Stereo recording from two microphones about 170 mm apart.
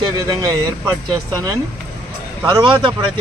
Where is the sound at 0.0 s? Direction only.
20° right (ahead or behind).